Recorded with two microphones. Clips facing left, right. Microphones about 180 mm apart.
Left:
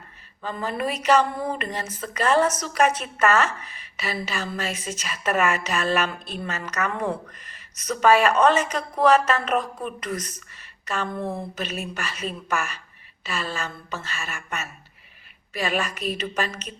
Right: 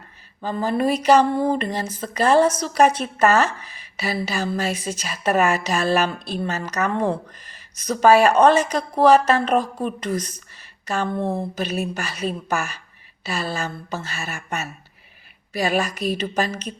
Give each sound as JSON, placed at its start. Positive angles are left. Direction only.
{"t": 0.4, "sound": "a woman's voice", "side_deg": -35}